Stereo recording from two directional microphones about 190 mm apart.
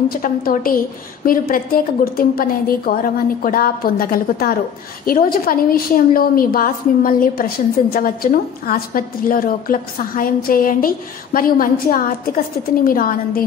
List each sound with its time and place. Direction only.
0.1 s a woman's voice: 50° left (ahead or behind)